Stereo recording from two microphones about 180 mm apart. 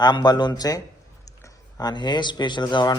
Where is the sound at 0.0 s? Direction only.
25° left (ahead or behind).